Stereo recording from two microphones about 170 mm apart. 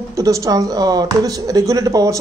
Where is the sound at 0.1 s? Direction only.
20° right (ahead or behind).